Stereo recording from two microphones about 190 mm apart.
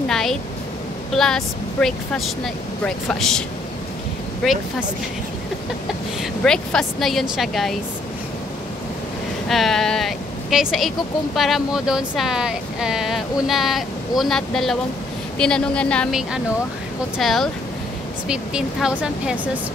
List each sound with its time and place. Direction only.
0.1 s speech: centre (ahead or behind)
6.4 s speech: 5° left (ahead or behind)
9.5 s speech: centre (ahead or behind)